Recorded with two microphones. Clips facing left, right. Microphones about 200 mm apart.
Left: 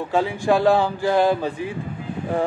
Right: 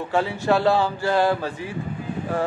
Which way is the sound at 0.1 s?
15° left (ahead or behind).